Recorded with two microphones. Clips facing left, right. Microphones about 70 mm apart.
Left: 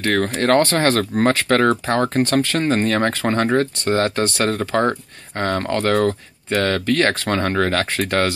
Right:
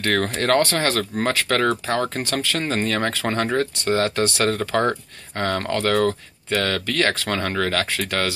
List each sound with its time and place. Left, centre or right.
0.0 s speech: centre
0.5 s speech: left